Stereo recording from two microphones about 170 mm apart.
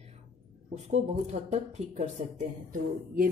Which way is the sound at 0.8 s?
40° right (ahead or behind).